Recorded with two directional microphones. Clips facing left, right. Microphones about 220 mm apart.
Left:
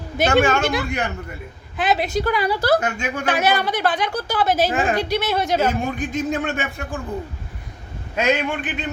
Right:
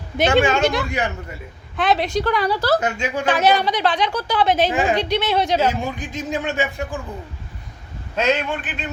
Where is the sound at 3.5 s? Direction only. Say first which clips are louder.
Right 2 dB; 50° left (ahead or behind).